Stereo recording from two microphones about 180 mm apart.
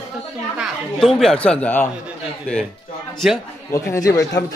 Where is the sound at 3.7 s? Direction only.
15° left (ahead or behind).